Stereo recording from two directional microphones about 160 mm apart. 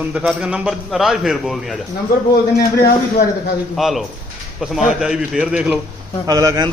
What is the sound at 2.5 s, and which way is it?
Speech, 90° left.